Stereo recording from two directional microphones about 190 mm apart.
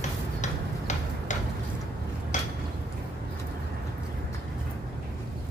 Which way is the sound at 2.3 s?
40° left (ahead or behind).